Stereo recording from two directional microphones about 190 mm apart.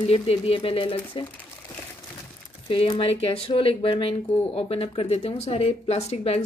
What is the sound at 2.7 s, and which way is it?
Speech, 25° left (ahead or behind).